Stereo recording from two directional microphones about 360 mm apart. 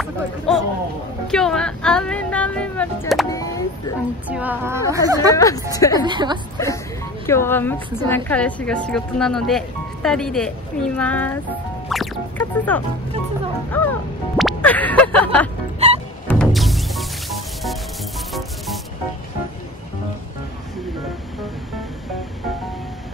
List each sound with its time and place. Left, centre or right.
1.2 s speech: centre
4.3 s a woman's voice: centre
5.3 s speech: centre
6.0 s a woman's voice: centre
7.2 s speech: centre
15.8 s music: centre
16.3 s music: centre